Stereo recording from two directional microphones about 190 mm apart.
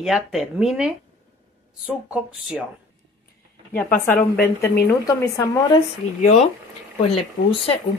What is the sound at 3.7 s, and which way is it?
Speech, 50° left (ahead or behind).